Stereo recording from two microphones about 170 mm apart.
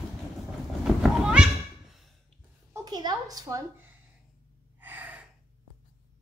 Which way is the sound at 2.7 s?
25° right (ahead or behind).